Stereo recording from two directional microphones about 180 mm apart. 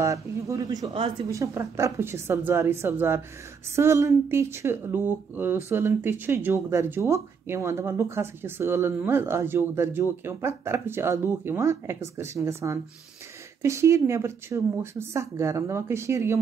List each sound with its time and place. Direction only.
0.0 s speech: 15° right (ahead or behind)